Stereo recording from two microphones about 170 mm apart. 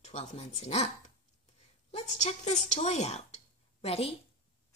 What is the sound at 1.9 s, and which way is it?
A woman's voice, 40° left (ahead or behind).